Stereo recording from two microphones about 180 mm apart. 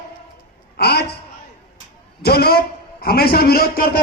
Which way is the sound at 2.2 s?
60° left (ahead or behind).